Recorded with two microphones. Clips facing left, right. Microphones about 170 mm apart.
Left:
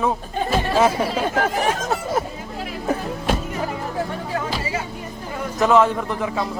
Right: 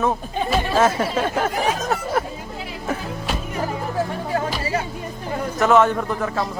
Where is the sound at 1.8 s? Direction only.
20° left (ahead or behind).